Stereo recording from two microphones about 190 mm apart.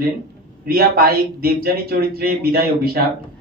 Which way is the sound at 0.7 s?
50° right (ahead or behind).